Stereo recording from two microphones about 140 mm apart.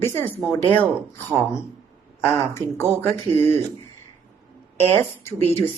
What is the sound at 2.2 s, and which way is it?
Speech, 15° left (ahead or behind).